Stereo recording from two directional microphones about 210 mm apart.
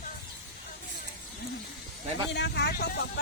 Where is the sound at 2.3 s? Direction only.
50° left (ahead or behind).